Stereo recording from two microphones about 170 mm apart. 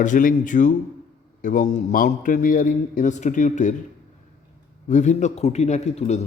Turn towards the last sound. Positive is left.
turn(degrees=40)  # may be behind; listen again after turning